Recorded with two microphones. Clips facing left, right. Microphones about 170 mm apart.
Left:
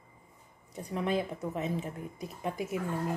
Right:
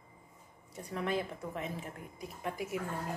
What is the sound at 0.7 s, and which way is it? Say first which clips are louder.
A woman's voice: left 4 dB; 20° left (ahead or behind).